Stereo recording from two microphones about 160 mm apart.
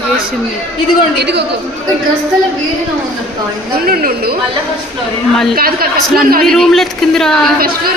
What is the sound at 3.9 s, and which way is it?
Speech, 65° right (ahead or behind).